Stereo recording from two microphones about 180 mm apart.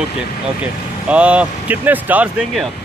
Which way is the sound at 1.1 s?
5° right (ahead or behind).